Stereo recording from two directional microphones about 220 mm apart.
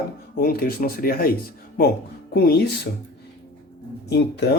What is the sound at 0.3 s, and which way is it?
Speech, 45° left (ahead or behind).